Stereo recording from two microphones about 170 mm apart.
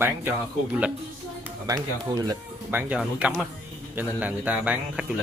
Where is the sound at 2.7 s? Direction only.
10° right (ahead or behind).